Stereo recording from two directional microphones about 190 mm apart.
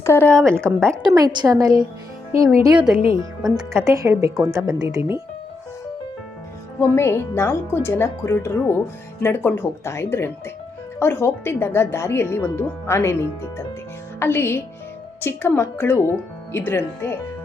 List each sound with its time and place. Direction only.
0.0 s a woman's voice: 10° left (ahead or behind)
0.4 s a woman's voice: 10° right (ahead or behind)
6.9 s speech: 15° left (ahead or behind)